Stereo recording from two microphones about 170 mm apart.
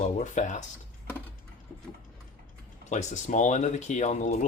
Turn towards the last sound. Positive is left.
turn(degrees=45)  # may be behind; listen again after turning